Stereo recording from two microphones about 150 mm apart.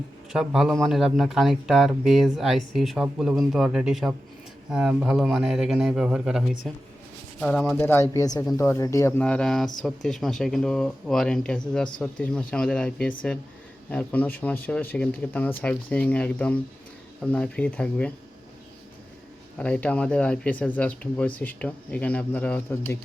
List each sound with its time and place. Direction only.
0.3 s speech: centre (ahead or behind)
7.8 s speech: 15° left (ahead or behind)
9.2 s speech: 5° left (ahead or behind)
19.5 s speech: 10° left (ahead or behind)